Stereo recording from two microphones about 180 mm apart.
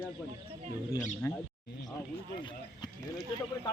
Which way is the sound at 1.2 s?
15° left (ahead or behind).